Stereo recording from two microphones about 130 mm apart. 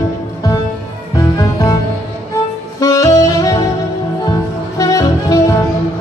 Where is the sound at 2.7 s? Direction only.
25° left (ahead or behind).